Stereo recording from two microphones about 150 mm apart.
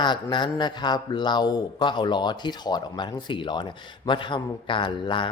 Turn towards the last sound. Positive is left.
turn(degrees=35)  # may be behind; listen again after turning